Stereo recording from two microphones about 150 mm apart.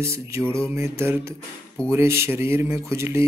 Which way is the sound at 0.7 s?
15° right (ahead or behind).